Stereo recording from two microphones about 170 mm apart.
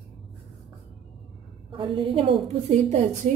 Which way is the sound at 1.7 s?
30° right (ahead or behind).